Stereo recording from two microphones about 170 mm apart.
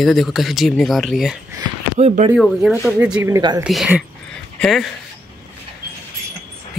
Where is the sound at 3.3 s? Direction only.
20° right (ahead or behind).